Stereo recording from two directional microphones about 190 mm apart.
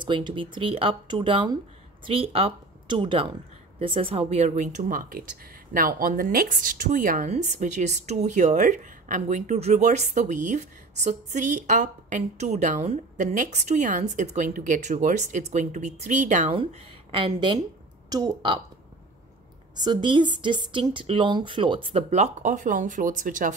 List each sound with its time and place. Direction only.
0.0 s a woman's voice: 25° right (ahead or behind); by 16.5 s 40° right (ahead or behind)
17.1 s a woman's voice: 25° right (ahead or behind)
19.7 s a woman's voice: 20° right (ahead or behind); by 23.5 s 45° right (ahead or behind)